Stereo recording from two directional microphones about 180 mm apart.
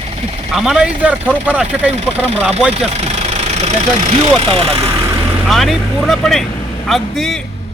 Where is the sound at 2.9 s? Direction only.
35° right (ahead or behind).